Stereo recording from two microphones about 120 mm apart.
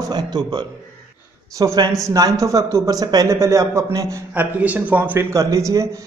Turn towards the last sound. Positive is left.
turn(degrees=-25)  # may be behind; listen again after turning